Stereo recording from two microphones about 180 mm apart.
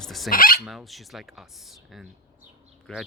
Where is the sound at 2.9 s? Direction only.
5° left (ahead or behind).